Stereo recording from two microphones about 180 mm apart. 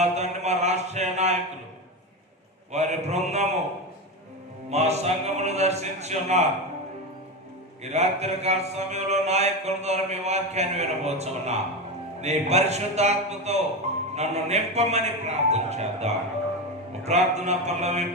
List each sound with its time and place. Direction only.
0.0 s a sound: 40° right (ahead or behind)
2.7 s mantra: 40° right (ahead or behind)
4.7 s mantra: 35° right (ahead or behind)
7.9 s mantra: 35° right (ahead or behind)